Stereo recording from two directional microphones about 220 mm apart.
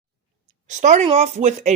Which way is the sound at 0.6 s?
35° right (ahead or behind).